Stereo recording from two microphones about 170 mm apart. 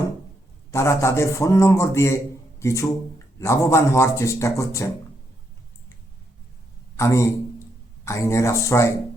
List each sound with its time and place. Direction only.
0.7 s a man's voice: 15° left (ahead or behind)
6.9 s a man's voice: 15° left (ahead or behind)